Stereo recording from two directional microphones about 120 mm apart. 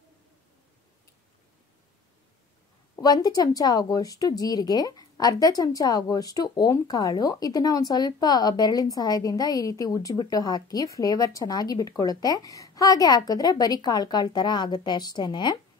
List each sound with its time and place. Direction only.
3.0 s a woman's voice: 35° left (ahead or behind)